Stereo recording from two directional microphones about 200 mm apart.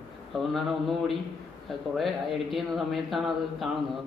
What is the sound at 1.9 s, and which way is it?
A man's voice, centre (ahead or behind).